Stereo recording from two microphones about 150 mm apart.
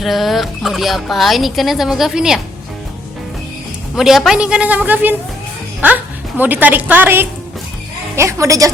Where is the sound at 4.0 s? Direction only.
Centre (ahead or behind); by 8.7 s 20° right (ahead or behind).